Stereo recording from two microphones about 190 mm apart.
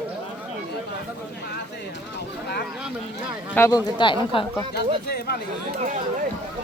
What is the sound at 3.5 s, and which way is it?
Speech, 15° left (ahead or behind).